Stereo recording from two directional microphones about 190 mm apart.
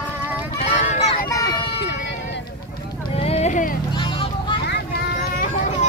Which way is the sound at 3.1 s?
35° left (ahead or behind).